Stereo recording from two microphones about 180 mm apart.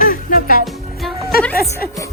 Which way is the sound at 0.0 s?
50° left (ahead or behind).